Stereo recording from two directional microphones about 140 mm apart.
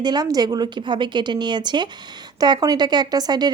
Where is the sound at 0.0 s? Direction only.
30° right (ahead or behind).